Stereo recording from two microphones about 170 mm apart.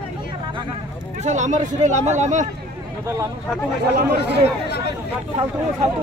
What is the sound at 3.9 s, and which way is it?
Speech, 60° right (ahead or behind).